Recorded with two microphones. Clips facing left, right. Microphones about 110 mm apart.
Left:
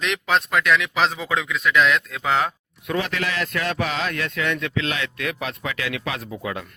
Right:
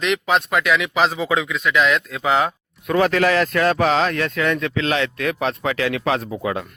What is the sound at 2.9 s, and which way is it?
Speech, 50° right (ahead or behind).